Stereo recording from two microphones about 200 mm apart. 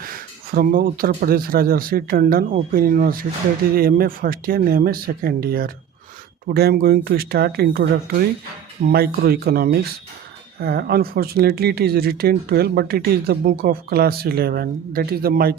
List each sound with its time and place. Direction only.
0.0 s speech: 45° right (ahead or behind)